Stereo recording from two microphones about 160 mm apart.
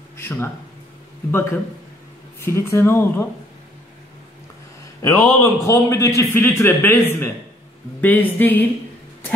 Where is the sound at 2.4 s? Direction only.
15° left (ahead or behind).